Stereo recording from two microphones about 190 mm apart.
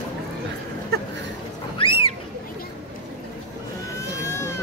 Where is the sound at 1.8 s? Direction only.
30° left (ahead or behind).